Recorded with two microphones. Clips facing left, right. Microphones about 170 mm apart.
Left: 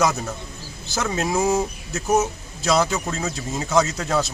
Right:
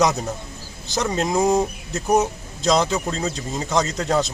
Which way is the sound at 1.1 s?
5° left (ahead or behind).